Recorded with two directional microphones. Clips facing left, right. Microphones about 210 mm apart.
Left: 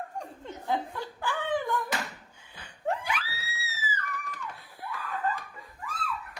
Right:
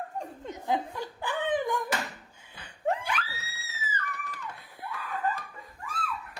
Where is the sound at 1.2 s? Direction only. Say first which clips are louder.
Right 1 dB; 20° right (ahead or behind).